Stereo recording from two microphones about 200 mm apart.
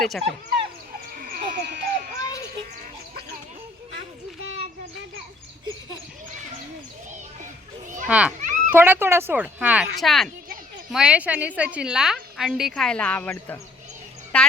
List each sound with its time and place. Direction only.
0.0 s a woman's voice: centre (ahead or behind)
1.1 s a sound: 45° right (ahead or behind)
8.0 s a child's voice: 5° right (ahead or behind)
8.4 s children playing: 40° right (ahead or behind)
8.7 s a woman's voice: 10° right (ahead or behind); by 14.5 s 5° left (ahead or behind)